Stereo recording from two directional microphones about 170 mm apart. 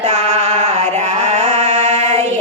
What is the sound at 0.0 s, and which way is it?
Music, 40° right (ahead or behind).